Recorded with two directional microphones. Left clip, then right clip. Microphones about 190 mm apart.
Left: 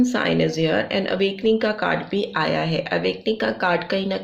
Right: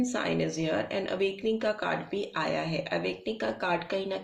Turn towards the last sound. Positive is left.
turn(degrees=35)  # may be behind; listen again after turning